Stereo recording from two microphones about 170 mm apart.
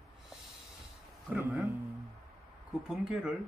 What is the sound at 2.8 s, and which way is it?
Speech, 5° right (ahead or behind).